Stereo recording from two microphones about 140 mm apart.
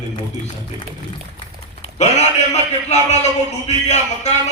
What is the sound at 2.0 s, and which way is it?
A man's voice, 55° left (ahead or behind).